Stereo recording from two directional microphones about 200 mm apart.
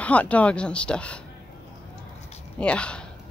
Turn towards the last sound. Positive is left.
turn(degrees=5)  # may be behind; listen again after turning